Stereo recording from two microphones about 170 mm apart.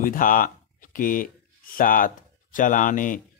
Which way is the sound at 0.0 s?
55° left (ahead or behind).